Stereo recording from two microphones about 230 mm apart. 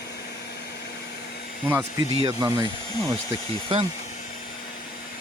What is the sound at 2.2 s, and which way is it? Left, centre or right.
Speech, centre.